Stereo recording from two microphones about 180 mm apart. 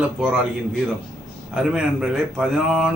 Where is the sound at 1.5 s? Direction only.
5° right (ahead or behind).